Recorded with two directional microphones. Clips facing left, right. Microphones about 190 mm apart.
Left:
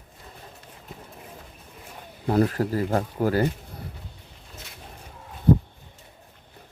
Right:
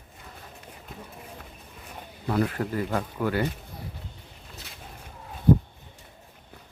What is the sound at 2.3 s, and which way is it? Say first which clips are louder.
Speech: left 4 dB; 35° left (ahead or behind).